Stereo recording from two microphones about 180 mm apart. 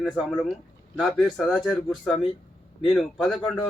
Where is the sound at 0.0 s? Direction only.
Centre (ahead or behind).